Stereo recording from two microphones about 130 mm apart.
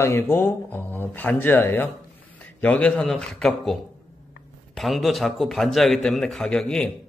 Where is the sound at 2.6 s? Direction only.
10° left (ahead or behind).